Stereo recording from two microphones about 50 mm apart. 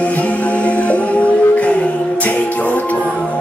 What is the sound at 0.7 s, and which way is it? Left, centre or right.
Music, left.